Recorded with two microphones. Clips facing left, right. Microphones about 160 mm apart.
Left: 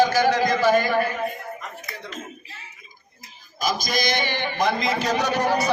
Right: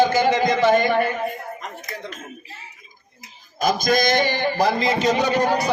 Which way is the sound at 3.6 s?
50° right (ahead or behind).